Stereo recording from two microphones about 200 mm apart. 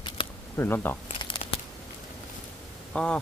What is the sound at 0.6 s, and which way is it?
Speech, 10° left (ahead or behind).